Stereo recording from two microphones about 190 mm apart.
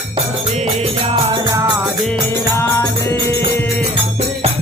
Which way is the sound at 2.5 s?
15° left (ahead or behind).